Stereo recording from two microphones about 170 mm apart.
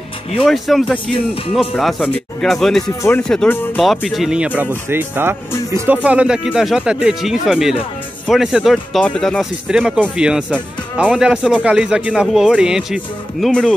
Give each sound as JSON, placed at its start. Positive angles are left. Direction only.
{"t": 0.5, "sound": "a man's voice", "side_deg": 0}
{"t": 0.9, "sound": "speech", "side_deg": 30}
{"t": 1.5, "sound": "a man's voice", "side_deg": 0}
{"t": 3.0, "sound": "a man's voice", "side_deg": 15}